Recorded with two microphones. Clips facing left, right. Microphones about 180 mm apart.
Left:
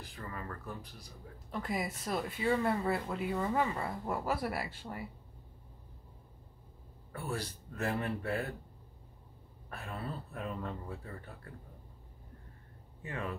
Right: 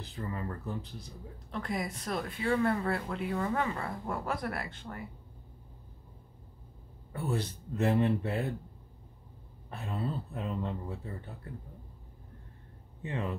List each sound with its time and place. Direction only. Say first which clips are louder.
0.0 s speech: right 6 dB; 25° right (ahead or behind)
1.5 s speech: right 1 dB; 5° left (ahead or behind)
7.1 s speech: right 5 dB; 20° right (ahead or behind)
9.7 s speech: right 5 dB; 20° right (ahead or behind)
13.0 s speech: right 4 dB; 20° right (ahead or behind)